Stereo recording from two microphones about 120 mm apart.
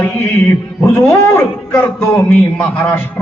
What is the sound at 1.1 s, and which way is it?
A man's voice, 25° left (ahead or behind).